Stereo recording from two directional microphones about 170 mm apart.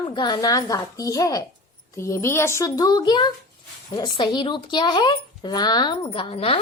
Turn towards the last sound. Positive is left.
turn(degrees=35)  # may be behind; listen again after turning